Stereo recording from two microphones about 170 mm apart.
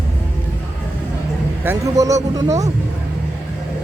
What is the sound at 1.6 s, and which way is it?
Speech, 15° right (ahead or behind).